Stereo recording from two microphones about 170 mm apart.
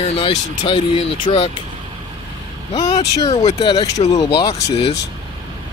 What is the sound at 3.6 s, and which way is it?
Speech, 25° left (ahead or behind).